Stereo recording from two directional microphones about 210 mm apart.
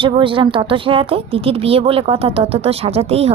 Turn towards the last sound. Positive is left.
turn(degrees=-30)  # may be behind; listen again after turning